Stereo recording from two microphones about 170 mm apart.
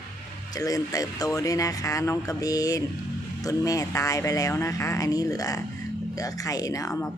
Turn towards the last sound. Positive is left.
turn(degrees=20)  # may be behind; listen again after turning